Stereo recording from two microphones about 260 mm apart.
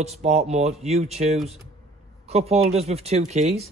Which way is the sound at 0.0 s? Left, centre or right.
Right.